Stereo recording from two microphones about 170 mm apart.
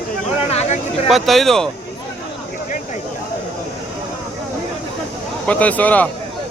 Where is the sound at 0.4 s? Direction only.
40° left (ahead or behind).